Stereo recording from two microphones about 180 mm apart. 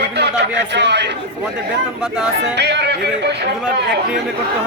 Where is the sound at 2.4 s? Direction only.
70° right (ahead or behind).